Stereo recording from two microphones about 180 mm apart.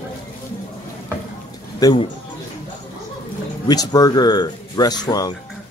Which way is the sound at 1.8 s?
20° left (ahead or behind).